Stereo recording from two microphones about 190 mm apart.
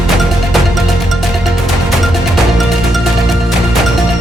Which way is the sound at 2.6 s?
Centre (ahead or behind).